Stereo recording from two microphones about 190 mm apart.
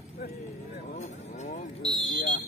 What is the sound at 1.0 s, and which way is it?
Vehicle, 40° left (ahead or behind).